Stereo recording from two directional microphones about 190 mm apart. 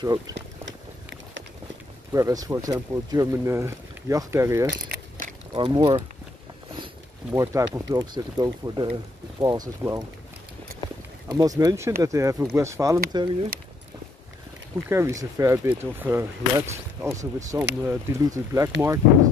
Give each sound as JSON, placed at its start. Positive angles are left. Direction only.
{"t": 0.3, "sound": "a sound", "side_deg": -75}
{"t": 2.1, "sound": "speech", "side_deg": -20}
{"t": 4.8, "sound": "a sound", "side_deg": -50}
{"t": 5.5, "sound": "speech", "side_deg": -25}
{"t": 7.3, "sound": "speech", "side_deg": -15}
{"t": 11.2, "sound": "speech", "side_deg": -20}
{"t": 14.9, "sound": "speech", "side_deg": -15}